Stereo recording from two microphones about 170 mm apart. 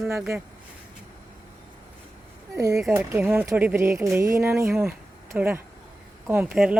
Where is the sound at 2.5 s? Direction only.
20° right (ahead or behind).